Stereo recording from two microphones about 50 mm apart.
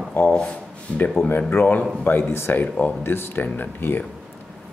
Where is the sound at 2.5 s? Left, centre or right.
Left.